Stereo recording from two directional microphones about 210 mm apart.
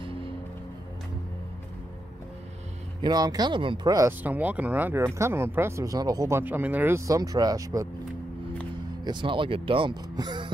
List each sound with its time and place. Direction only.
0.0 s music: 25° right (ahead or behind)
3.0 s speech: 20° right (ahead or behind)
9.0 s speech: 20° right (ahead or behind)